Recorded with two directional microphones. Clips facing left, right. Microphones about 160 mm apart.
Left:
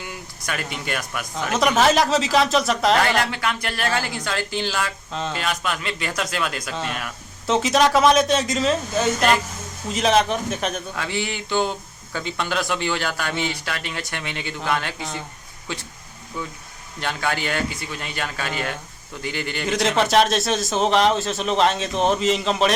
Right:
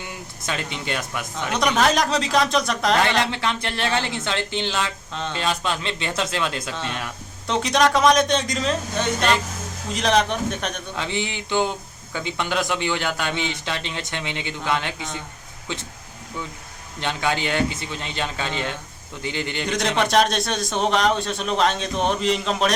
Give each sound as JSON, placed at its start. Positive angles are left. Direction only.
{"t": 0.4, "sound": "a man's voice", "side_deg": -25}
{"t": 1.5, "sound": "a man's voice", "side_deg": 5}
{"t": 3.2, "sound": "a man's voice", "side_deg": -25}
{"t": 7.4, "sound": "a man's voice", "side_deg": 5}
{"t": 10.9, "sound": "a man's voice", "side_deg": -20}
{"t": 17.0, "sound": "a man's voice", "side_deg": -20}
{"t": 19.6, "sound": "a man's voice", "side_deg": 5}